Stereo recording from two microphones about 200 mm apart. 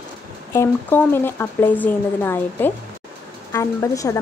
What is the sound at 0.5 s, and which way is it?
Speech, 10° left (ahead or behind).